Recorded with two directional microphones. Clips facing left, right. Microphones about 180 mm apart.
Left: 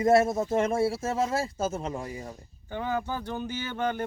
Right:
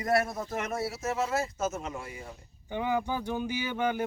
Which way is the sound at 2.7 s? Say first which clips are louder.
Right 1 dB; 15° right (ahead or behind).